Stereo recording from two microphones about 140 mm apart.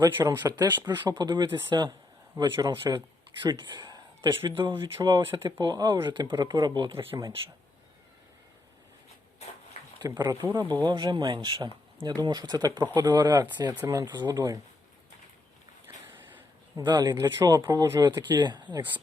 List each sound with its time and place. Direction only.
0.0 s a man's voice: 30° right (ahead or behind)
10.0 s speech: 30° right (ahead or behind)
16.7 s speech: 30° right (ahead or behind)